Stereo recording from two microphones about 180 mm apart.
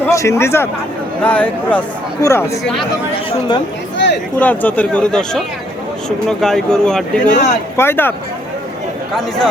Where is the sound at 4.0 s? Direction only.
75° left (ahead or behind).